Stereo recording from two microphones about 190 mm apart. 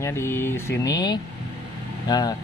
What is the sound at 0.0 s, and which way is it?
Speech, 15° left (ahead or behind).